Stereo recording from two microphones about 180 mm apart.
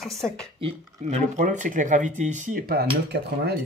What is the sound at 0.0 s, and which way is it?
Speech, centre (ahead or behind).